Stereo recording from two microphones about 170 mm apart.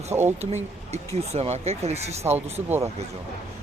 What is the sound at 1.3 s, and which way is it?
Speech, 40° right (ahead or behind).